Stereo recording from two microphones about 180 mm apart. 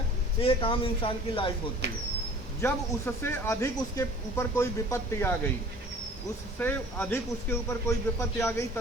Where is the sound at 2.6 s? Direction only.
10° left (ahead or behind).